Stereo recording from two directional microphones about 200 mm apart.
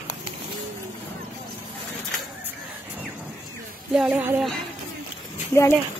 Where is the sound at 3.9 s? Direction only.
5° right (ahead or behind).